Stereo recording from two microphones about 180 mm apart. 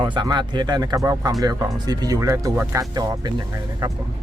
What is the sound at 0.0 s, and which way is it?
Speech, 25° right (ahead or behind).